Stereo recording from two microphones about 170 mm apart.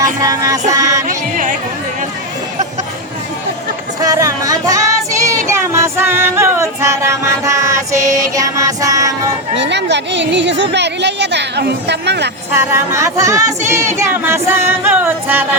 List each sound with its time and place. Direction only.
0.2 s music: 20° right (ahead or behind)
1.0 s music: 50° right (ahead or behind)
4.0 s music: 20° right (ahead or behind)
9.6 s a woman's voice: 90° right
12.5 s speech: 15° right (ahead or behind)